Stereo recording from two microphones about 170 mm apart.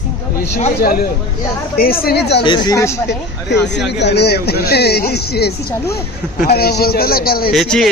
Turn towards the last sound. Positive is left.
turn(degrees=0)  # may be behind; listen again after turning